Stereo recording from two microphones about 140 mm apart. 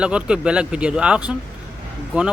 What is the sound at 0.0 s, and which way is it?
Speech, 5° right (ahead or behind).